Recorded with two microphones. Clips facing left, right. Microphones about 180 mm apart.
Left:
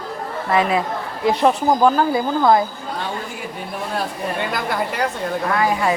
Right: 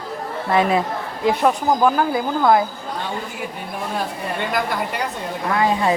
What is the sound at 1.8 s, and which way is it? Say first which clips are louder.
Speech: left 2 dB; 10° right (ahead or behind).